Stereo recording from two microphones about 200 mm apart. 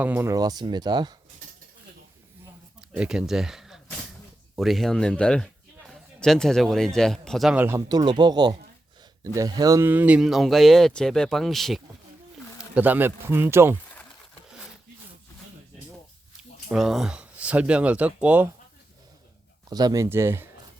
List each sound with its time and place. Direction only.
0.0 s speech: 10° right (ahead or behind)
2.9 s a man's voice: 5° right (ahead or behind)
7.9 s speech: 20° right (ahead or behind)
16.6 s speech: centre (ahead or behind)
19.7 s speech: 20° right (ahead or behind)